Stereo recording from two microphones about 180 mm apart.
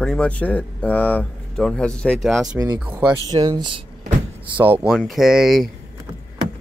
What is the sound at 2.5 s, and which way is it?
Speech, 15° right (ahead or behind).